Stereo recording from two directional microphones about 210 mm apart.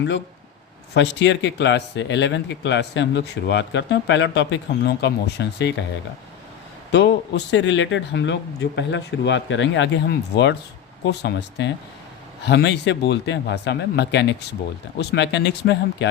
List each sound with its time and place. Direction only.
0.9 s speech: 55° left (ahead or behind)
6.9 s speech: 55° left (ahead or behind)